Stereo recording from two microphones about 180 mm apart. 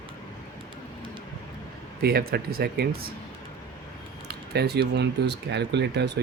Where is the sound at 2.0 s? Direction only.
60° right (ahead or behind).